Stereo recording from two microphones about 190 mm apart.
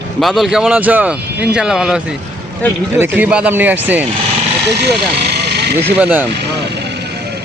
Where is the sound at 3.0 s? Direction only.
5° right (ahead or behind).